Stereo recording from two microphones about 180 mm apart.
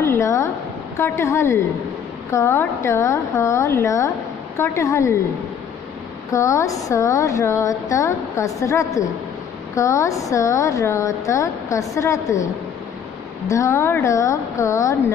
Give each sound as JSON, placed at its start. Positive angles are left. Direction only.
{"t": 0.0, "sound": "a sound", "side_deg": 15}
{"t": 0.9, "sound": "a woman's voice", "side_deg": 15}
{"t": 6.3, "sound": "a woman's voice", "side_deg": 15}
{"t": 13.5, "sound": "a woman's voice", "side_deg": 15}